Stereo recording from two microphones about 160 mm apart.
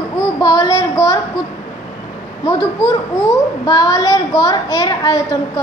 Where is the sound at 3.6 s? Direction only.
20° left (ahead or behind).